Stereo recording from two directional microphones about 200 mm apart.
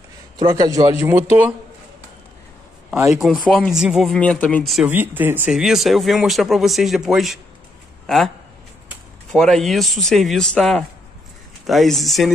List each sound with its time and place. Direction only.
0.4 s a man's voice: 20° right (ahead or behind)
2.9 s speech: 5° right (ahead or behind)
9.3 s speech: centre (ahead or behind)